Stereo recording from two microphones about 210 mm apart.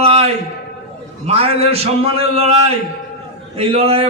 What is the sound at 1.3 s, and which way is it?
A man's voice, 30° right (ahead or behind).